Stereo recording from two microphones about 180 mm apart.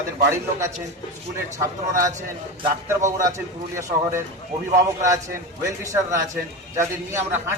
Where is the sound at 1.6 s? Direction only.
15° right (ahead or behind).